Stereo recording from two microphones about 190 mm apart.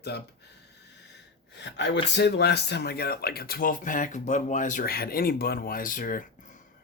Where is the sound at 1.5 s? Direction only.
65° left (ahead or behind).